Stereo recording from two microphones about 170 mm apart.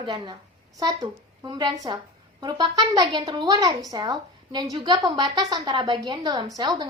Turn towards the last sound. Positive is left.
turn(degrees=-25)  # may be behind; listen again after turning